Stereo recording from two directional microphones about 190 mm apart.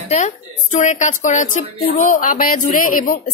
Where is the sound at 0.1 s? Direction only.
40° left (ahead or behind).